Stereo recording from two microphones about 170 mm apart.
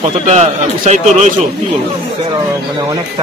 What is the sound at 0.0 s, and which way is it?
A man's voice, 40° right (ahead or behind).